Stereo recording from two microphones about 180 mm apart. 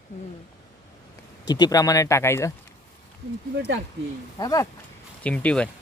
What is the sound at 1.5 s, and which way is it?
Speech, 20° left (ahead or behind).